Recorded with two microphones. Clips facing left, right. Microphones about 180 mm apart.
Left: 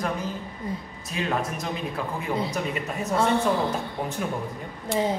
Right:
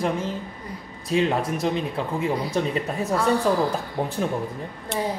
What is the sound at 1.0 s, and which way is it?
Speech, 30° right (ahead or behind).